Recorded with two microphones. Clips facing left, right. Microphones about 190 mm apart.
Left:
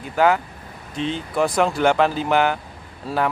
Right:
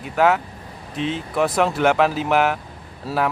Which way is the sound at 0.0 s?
Centre (ahead or behind).